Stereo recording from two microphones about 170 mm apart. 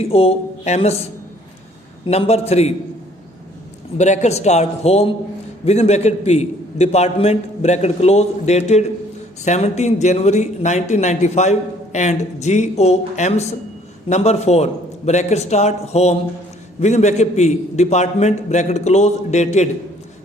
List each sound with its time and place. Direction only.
0.0 s a man's voice: 35° left (ahead or behind)
2.0 s a man's voice: 40° left (ahead or behind)
3.9 s a man's voice: 45° left (ahead or behind)